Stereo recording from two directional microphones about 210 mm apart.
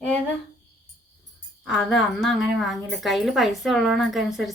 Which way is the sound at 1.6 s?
Centre (ahead or behind).